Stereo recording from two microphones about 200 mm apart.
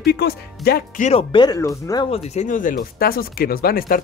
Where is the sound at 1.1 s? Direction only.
25° left (ahead or behind).